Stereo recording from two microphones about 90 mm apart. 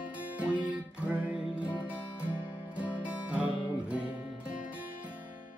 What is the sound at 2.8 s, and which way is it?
Music, 15° right (ahead or behind).